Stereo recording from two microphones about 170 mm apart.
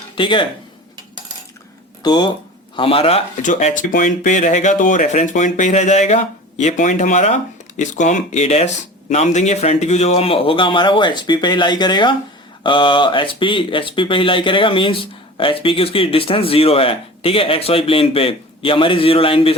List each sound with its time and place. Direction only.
0.2 s speech: 30° left (ahead or behind)
2.0 s speech: 25° left (ahead or behind)
3.4 s speech: 50° left (ahead or behind); by 19.5 s 30° left (ahead or behind)